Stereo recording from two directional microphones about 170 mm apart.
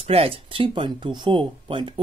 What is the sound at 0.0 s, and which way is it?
Speech, 35° right (ahead or behind).